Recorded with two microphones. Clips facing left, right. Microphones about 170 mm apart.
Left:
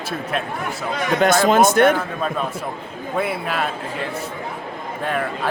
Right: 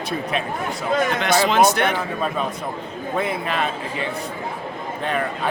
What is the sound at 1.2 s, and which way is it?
Speech, 45° left (ahead or behind).